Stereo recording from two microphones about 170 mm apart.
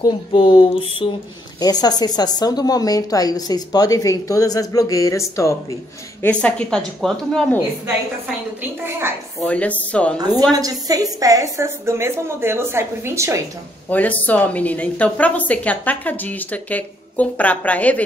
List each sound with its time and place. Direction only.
0.3 s a sound: 30° left (ahead or behind)
1.6 s a woman's voice: 25° left (ahead or behind)
6.2 s speech: 5° left (ahead or behind)
9.5 s a woman's voice: 10° left (ahead or behind)
10.1 s a woman's voice: 25° right (ahead or behind)
13.8 s a woman's voice: 10° left (ahead or behind)